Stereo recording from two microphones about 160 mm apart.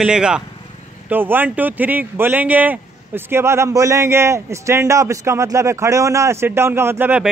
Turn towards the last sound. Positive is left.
turn(degrees=-10)  # may be behind; listen again after turning